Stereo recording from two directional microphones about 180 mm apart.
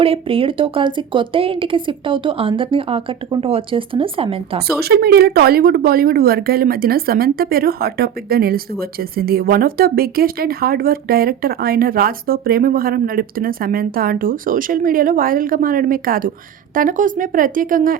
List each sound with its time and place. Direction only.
0.0 s a woman's voice: 30° right (ahead or behind)
4.8 s a woman's voice: 60° right (ahead or behind)